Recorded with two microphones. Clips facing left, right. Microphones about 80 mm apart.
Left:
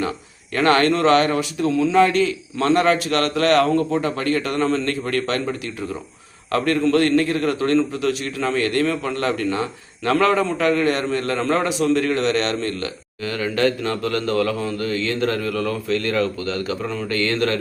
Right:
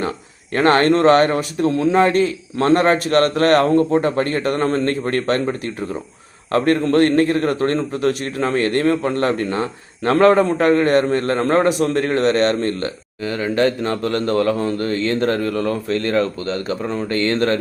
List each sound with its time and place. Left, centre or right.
0.5 s a man's voice: right